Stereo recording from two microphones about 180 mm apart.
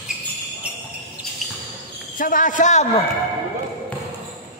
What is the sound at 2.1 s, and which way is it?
Speech, 50° left (ahead or behind).